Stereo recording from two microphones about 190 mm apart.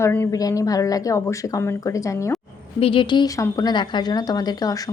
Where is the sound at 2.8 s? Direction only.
30° left (ahead or behind).